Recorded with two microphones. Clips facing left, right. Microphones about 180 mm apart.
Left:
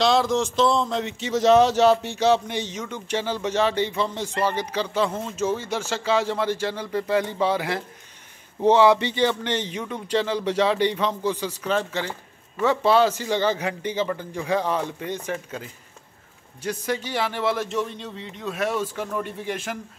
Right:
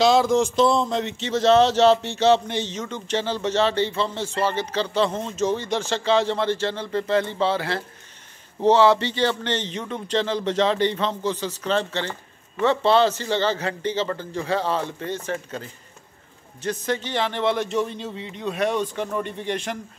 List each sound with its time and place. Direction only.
0.0 s a man's voice: centre (ahead or behind)
1.4 s a man's voice: 15° left (ahead or behind)